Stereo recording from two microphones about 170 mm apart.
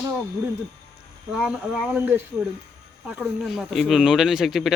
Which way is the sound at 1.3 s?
5° right (ahead or behind).